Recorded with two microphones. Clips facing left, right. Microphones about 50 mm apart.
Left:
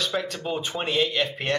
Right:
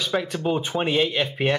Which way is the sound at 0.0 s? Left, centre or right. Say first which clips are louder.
Right 3 dB; centre.